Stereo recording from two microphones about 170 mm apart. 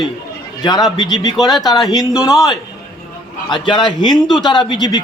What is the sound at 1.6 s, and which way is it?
Speech, 25° left (ahead or behind).